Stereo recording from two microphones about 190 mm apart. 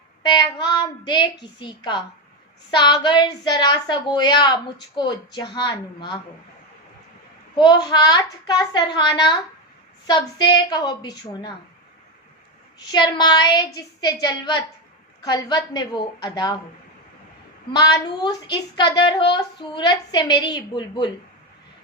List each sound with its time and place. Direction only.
0.2 s a woman's voice: 25° left (ahead or behind)
7.5 s a child's voice: 25° left (ahead or behind)
12.8 s a woman's voice: 20° left (ahead or behind)
17.7 s a woman's voice: 25° left (ahead or behind)